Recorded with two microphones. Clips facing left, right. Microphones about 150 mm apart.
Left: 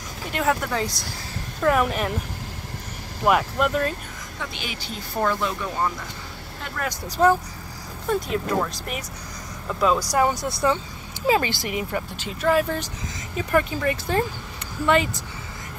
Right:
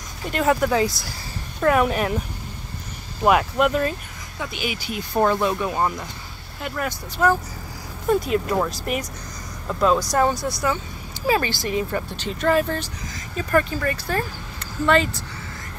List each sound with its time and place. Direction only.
0.3 s speech: centre (ahead or behind)
3.3 s speech: 5° right (ahead or behind); by 5.9 s 20° right (ahead or behind)
7.2 s speech: 30° left (ahead or behind)
8.1 s speech: 5° right (ahead or behind)
10.5 s speech: 25° left (ahead or behind)